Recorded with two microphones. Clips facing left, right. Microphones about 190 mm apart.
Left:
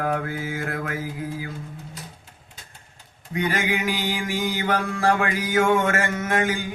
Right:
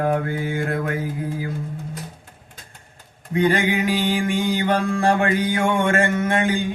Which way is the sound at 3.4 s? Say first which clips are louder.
Right 6 dB; 30° right (ahead or behind).